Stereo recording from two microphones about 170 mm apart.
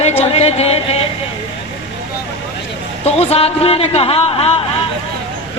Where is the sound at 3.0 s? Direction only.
35° left (ahead or behind).